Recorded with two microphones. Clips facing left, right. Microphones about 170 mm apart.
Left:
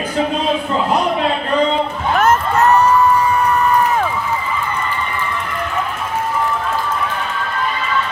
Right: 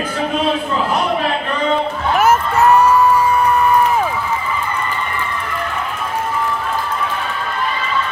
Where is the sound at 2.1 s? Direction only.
10° right (ahead or behind).